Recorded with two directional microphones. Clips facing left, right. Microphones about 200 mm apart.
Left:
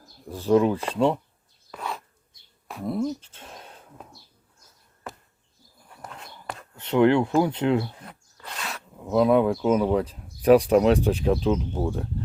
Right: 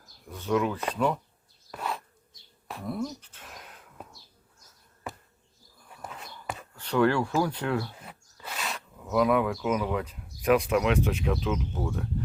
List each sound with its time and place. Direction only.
0.0 s speech: 30° left (ahead or behind)
1.7 s bee: centre (ahead or behind)
2.8 s speech: 25° left (ahead or behind)
6.0 s a sound: 5° right (ahead or behind)
6.7 s speech: 20° left (ahead or behind)
8.0 s owl: 5° right (ahead or behind)
9.0 s speech: 30° left (ahead or behind)